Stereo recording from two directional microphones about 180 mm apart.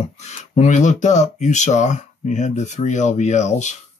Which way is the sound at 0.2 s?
40° left (ahead or behind).